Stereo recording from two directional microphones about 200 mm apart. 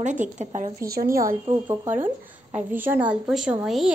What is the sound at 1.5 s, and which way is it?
A woman's voice, 10° right (ahead or behind).